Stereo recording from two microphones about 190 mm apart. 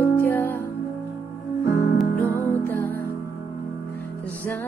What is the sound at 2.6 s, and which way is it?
Music, 10° left (ahead or behind).